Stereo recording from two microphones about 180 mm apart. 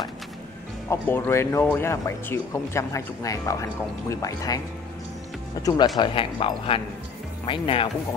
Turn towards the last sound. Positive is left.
turn(degrees=30)  # may be behind; listen again after turning